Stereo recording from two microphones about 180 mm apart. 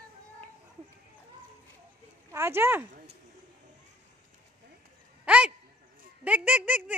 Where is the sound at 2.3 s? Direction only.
15° right (ahead or behind).